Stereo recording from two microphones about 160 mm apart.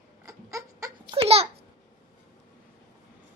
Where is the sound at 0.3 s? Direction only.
20° right (ahead or behind).